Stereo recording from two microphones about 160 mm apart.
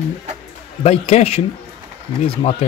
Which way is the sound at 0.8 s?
40° left (ahead or behind).